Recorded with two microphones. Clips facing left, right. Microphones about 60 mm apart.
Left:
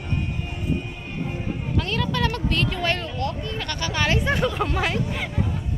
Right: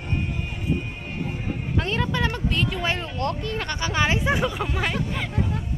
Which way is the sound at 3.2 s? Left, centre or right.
Right.